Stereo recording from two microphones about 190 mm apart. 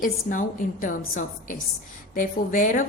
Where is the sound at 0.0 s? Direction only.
45° left (ahead or behind).